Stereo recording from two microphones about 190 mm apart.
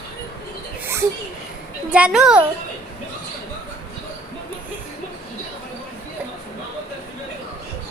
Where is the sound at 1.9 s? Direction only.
5° right (ahead or behind).